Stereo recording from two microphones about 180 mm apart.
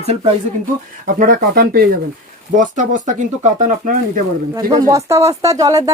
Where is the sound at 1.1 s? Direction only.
50° right (ahead or behind).